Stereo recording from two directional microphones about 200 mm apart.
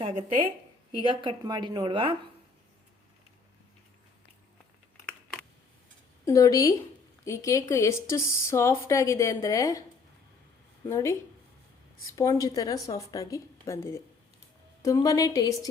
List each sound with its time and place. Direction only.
0.0 s speech: 30° right (ahead or behind)
6.2 s speech: 15° left (ahead or behind)
10.8 s speech: 15° left (ahead or behind)